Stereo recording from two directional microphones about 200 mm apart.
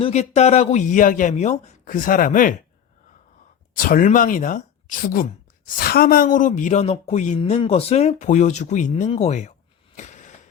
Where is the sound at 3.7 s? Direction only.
45° left (ahead or behind).